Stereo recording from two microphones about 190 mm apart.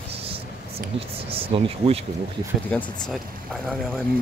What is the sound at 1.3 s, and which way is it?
Speech, 30° right (ahead or behind).